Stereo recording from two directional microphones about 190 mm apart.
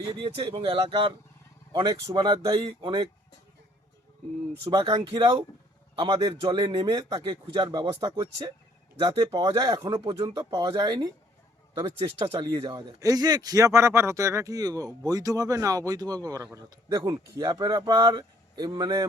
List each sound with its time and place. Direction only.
0.1 s speech: 30° right (ahead or behind)
4.6 s speech: 20° right (ahead or behind)
12.3 s speech: 25° right (ahead or behind)